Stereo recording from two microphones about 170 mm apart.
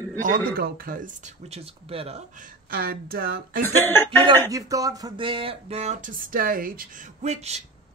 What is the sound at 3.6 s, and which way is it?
Speech, 10° left (ahead or behind).